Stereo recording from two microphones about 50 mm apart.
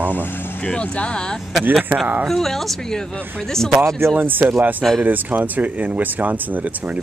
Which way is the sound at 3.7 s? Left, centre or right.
Right.